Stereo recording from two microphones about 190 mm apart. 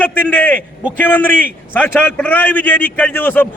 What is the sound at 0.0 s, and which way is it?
A man's voice, 10° left (ahead or behind).